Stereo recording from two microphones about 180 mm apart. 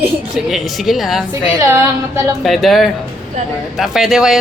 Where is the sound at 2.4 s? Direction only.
Centre (ahead or behind).